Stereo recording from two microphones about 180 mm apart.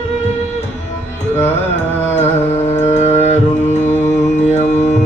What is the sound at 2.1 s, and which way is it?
Music, 40° left (ahead or behind).